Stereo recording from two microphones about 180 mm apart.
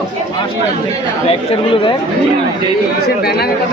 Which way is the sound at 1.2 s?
35° left (ahead or behind).